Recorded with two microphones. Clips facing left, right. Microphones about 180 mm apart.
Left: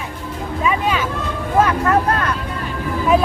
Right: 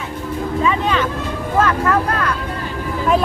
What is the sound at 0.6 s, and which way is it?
Speech, 10° left (ahead or behind).